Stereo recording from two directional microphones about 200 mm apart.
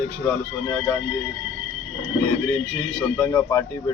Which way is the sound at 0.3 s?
10° left (ahead or behind).